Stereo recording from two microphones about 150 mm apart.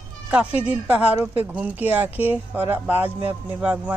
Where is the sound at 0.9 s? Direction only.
10° right (ahead or behind).